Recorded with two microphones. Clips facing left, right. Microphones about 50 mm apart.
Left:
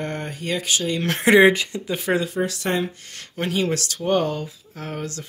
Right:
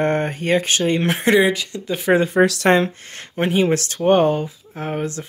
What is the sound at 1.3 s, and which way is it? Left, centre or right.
Speech, left.